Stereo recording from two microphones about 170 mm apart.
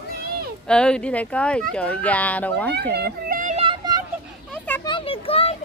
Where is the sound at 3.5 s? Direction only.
35° right (ahead or behind).